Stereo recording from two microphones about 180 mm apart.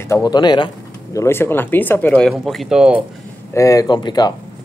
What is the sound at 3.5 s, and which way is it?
Speech, 15° left (ahead or behind).